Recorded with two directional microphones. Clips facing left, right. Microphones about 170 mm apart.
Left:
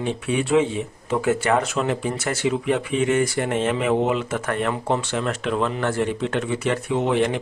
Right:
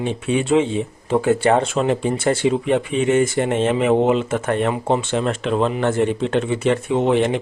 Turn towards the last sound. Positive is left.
turn(degrees=-25)  # may be behind; listen again after turning